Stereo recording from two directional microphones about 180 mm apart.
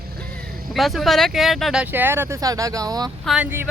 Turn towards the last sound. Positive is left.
turn(degrees=-10)  # may be behind; listen again after turning